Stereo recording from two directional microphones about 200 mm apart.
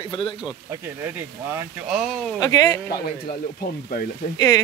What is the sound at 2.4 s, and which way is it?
Speech, 20° left (ahead or behind).